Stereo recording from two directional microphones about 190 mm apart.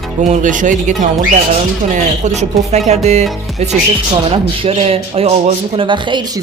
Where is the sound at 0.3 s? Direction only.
40° right (ahead or behind).